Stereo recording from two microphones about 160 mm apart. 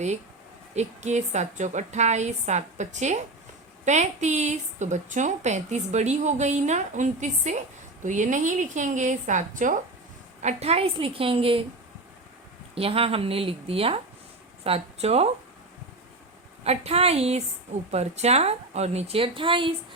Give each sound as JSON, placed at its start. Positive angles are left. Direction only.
{"t": 0.7, "sound": "a woman's voice", "side_deg": -45}
{"t": 10.4, "sound": "a woman's voice", "side_deg": -40}
{"t": 12.7, "sound": "a woman's voice", "side_deg": -35}
{"t": 16.6, "sound": "a woman's voice", "side_deg": -40}